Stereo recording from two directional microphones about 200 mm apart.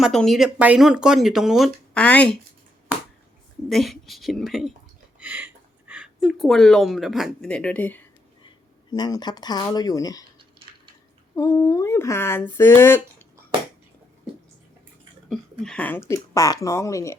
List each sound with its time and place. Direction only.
0.0 s speech: centre (ahead or behind)
3.7 s speech: centre (ahead or behind)
5.2 s a sound: 10° right (ahead or behind)
5.9 s speech: 5° right (ahead or behind)
8.4 s speech: 20° left (ahead or behind)
11.3 s speech: 15° left (ahead or behind)
15.3 s speech: 5° left (ahead or behind)